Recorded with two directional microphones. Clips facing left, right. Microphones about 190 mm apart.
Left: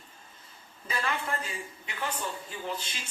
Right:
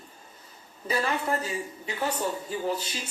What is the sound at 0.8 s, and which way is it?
A woman's voice, 30° right (ahead or behind).